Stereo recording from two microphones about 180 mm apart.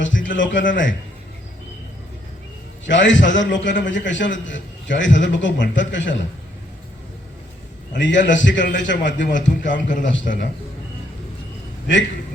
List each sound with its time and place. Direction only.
0.0 s a sound: 90° left
0.7 s a man's voice: 90° left
2.8 s a man's voice: 85° left
7.9 s a man's voice: 90° left
9.7 s a man's voice: 50° left (ahead or behind)
10.0 s a man's voice: 90° left